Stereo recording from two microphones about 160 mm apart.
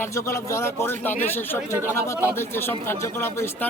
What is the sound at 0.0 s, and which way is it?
A man's voice, 15° left (ahead or behind).